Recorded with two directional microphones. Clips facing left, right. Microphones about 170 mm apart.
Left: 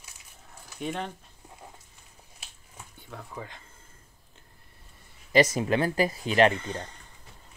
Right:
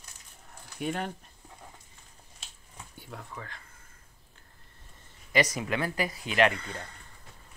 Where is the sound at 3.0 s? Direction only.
5° right (ahead or behind).